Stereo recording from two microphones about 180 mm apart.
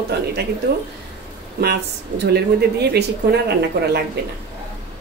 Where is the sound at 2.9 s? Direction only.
65° right (ahead or behind).